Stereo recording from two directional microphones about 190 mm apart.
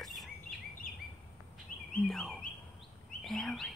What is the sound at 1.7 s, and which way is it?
Bird, 45° left (ahead or behind).